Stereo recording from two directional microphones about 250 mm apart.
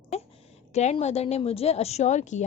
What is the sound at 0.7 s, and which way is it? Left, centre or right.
A woman's voice, left.